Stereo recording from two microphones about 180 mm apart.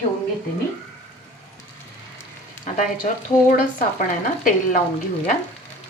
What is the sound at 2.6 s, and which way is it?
Speech, 45° left (ahead or behind).